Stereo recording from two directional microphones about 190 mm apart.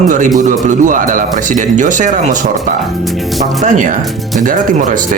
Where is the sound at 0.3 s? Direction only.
45° right (ahead or behind).